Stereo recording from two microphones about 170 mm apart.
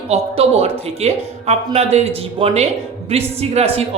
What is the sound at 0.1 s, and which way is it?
Speech, 35° right (ahead or behind).